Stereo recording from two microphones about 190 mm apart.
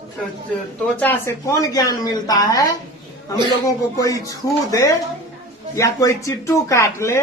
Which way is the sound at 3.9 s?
20° left (ahead or behind).